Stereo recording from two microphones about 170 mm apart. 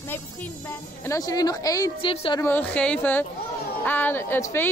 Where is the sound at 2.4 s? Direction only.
10° left (ahead or behind).